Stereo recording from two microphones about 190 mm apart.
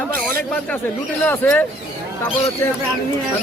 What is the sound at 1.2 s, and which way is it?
Speech, 10° left (ahead or behind).